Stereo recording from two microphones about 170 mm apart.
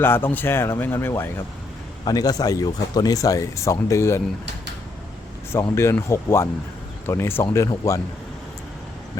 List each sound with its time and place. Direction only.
0.0 s speech: 15° left (ahead or behind)
5.7 s speech: 15° left (ahead or behind)